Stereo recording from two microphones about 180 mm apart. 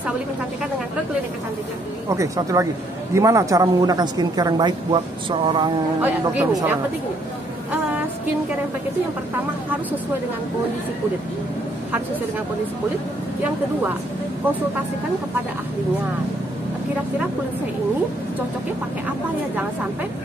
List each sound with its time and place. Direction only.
2.0 s speech: 20° right (ahead or behind)
5.9 s speech: 10° right (ahead or behind)